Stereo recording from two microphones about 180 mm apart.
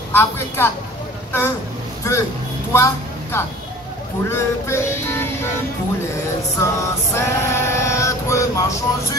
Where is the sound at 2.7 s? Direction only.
15° left (ahead or behind).